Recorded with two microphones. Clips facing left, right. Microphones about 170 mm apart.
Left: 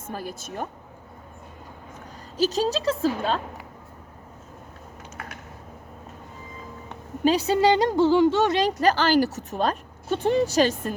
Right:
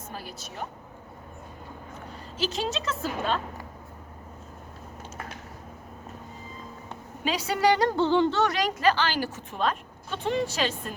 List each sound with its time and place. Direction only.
0.1 s a woman's voice: 45° left (ahead or behind)
2.4 s a woman's voice: 40° left (ahead or behind)
7.4 s speech: 25° left (ahead or behind)
7.9 s yodeling: 5° left (ahead or behind)
8.5 s a woman's voice: 35° left (ahead or behind)